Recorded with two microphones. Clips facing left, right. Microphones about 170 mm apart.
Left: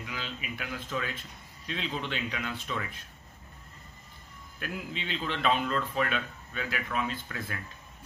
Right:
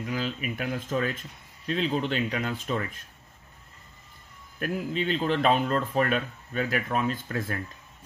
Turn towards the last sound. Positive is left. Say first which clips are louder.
# right 7 dB
turn(degrees=-40)  # may be behind; listen again after turning